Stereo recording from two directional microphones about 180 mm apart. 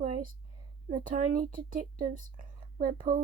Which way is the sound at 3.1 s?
30° right (ahead or behind).